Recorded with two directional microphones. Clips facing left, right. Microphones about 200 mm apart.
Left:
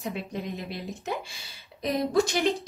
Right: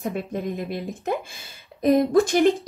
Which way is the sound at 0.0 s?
50° right (ahead or behind).